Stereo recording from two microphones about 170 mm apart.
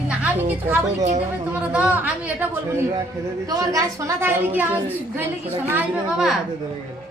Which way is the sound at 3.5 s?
20° right (ahead or behind).